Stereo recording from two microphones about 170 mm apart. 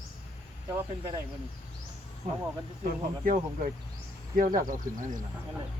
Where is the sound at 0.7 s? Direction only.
15° right (ahead or behind).